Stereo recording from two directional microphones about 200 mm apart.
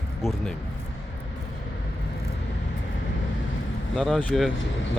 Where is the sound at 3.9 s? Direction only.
5° left (ahead or behind).